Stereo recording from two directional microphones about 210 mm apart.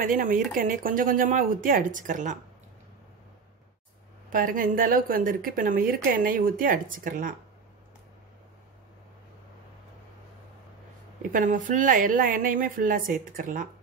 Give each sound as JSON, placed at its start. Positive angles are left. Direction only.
{"t": 0.0, "sound": "speech", "side_deg": -40}
{"t": 4.3, "sound": "speech", "side_deg": -40}
{"t": 11.3, "sound": "speech", "side_deg": -40}